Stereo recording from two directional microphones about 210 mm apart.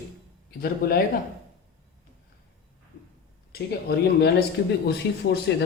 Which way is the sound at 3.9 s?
45° left (ahead or behind).